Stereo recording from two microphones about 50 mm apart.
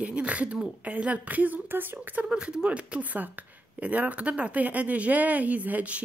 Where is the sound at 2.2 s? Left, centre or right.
Centre.